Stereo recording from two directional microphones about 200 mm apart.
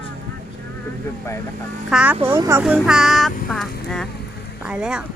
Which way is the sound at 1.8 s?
5° right (ahead or behind).